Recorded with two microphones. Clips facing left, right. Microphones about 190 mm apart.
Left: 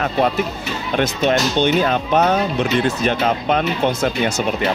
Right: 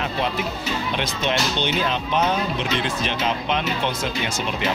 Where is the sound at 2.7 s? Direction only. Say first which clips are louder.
Left 7 dB; 45° left (ahead or behind).